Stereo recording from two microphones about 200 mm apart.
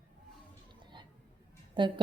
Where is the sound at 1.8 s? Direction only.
25° right (ahead or behind).